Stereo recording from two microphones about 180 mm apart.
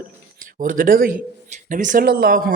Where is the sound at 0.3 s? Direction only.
50° right (ahead or behind).